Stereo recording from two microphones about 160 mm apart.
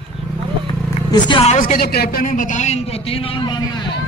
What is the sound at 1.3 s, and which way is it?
Speech, 35° left (ahead or behind).